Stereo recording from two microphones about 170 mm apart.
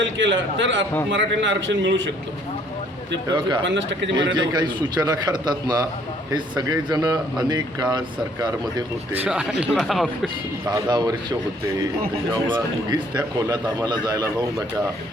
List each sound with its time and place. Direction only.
0.0 s a man's voice: 90° right
3.2 s speech: 25° right (ahead or behind)
3.6 s a man's voice: 90° right
4.1 s speech: 25° right (ahead or behind)
9.2 s speech: 5° right (ahead or behind)
10.7 s speech: 25° right (ahead or behind)
12.5 s speech: 25° right (ahead or behind)